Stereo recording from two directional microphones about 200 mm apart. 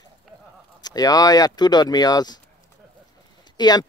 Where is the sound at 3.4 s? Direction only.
20° left (ahead or behind).